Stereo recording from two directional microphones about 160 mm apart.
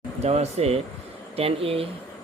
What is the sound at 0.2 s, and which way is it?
Speech, 40° right (ahead or behind).